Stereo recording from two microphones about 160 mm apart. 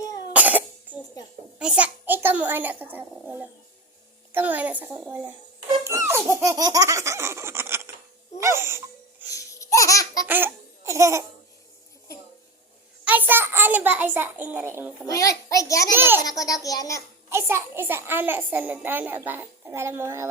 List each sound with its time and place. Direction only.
0.3 s cough: 10° right (ahead or behind)
1.5 s a child's voice: 5° right (ahead or behind)
8.4 s wheeze: 15° right (ahead or behind)
9.3 s laughter: 20° left (ahead or behind)
10.2 s laughter: 10° right (ahead or behind)
13.1 s a child's voice: 10° right (ahead or behind)
15.0 s a child's voice: 20° left (ahead or behind)
16.0 s a child's voice: 15° right (ahead or behind)
16.2 s a child's voice: 20° left (ahead or behind)
17.2 s a child's voice: 15° right (ahead or behind)